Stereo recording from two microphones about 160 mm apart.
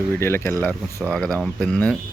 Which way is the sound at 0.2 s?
15° left (ahead or behind).